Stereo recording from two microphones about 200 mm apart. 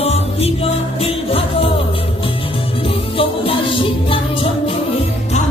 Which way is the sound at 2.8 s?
25° left (ahead or behind).